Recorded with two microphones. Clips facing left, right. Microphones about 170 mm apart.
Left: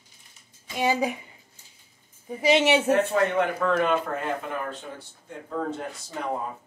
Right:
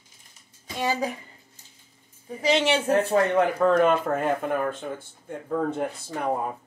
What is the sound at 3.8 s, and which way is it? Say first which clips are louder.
Speech: right 4 dB; 50° right (ahead or behind).